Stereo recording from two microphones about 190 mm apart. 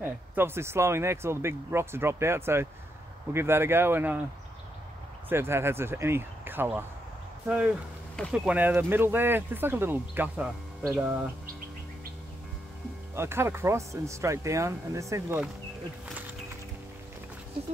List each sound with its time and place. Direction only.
0.0 s speech: 10° right (ahead or behind)
5.3 s speech: 10° right (ahead or behind)
13.1 s speech: 15° right (ahead or behind)